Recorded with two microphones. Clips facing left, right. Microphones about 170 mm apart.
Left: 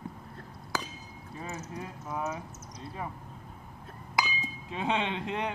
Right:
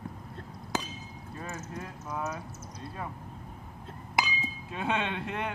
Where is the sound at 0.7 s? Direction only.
20° right (ahead or behind).